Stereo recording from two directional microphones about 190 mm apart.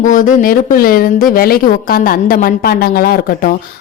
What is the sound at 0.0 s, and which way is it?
A woman's voice, 45° left (ahead or behind).